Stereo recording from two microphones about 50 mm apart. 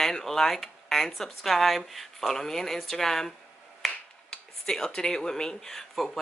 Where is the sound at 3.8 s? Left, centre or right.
Centre.